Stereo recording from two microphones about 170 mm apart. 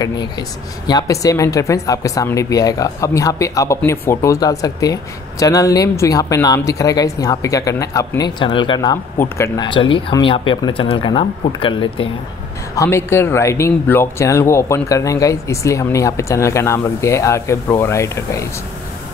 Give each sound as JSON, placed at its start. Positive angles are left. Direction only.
{"t": 0.0, "sound": "a woman's voice", "side_deg": 25}
{"t": 12.7, "sound": "speech", "side_deg": 15}